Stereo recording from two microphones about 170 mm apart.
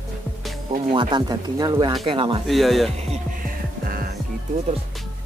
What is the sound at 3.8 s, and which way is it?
Music, 60° right (ahead or behind).